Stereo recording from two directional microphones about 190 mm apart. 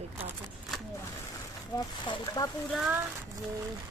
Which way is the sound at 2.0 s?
25° left (ahead or behind).